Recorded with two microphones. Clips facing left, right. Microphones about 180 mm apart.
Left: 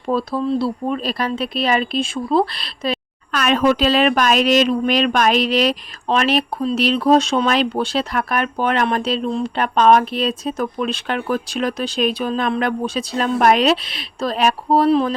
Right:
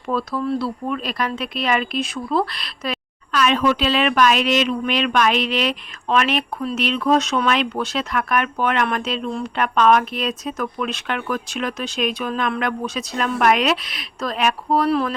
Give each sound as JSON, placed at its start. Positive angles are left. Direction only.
{"t": 0.1, "sound": "speech", "side_deg": 30}
{"t": 3.3, "sound": "speech", "side_deg": 50}